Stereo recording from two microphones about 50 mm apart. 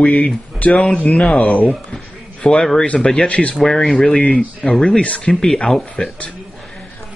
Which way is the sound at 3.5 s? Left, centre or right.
Centre.